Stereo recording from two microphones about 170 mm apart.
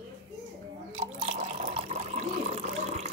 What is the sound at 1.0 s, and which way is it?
Water, 45° right (ahead or behind).